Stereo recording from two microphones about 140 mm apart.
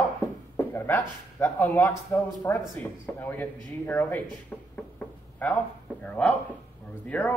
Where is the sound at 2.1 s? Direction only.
15° left (ahead or behind).